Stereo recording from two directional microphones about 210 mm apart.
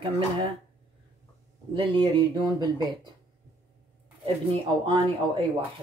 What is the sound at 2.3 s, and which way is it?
Speech, 20° right (ahead or behind).